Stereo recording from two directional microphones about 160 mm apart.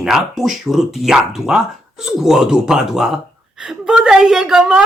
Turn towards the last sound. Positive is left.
turn(degrees=-5)  # may be behind; listen again after turning